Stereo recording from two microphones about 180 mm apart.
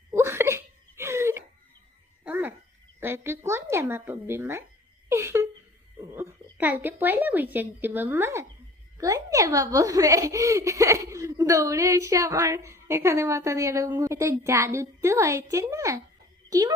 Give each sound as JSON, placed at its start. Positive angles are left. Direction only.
{"t": 0.1, "sound": "wail", "side_deg": -15}
{"t": 2.2, "sound": "dog", "side_deg": -10}
{"t": 3.0, "sound": "a child's voice", "side_deg": -15}
{"t": 5.0, "sound": "a sound", "side_deg": -15}
{"t": 6.0, "sound": "a child's voice", "side_deg": -15}